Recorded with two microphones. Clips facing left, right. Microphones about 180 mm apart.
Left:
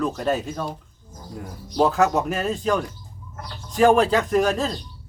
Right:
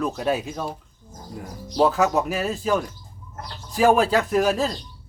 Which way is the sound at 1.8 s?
Centre (ahead or behind).